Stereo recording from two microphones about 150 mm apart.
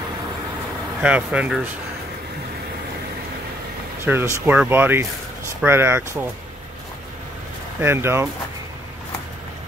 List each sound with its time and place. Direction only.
1.0 s speech: 10° right (ahead or behind)
4.0 s speech: 15° right (ahead or behind)
7.8 s speech: 15° right (ahead or behind)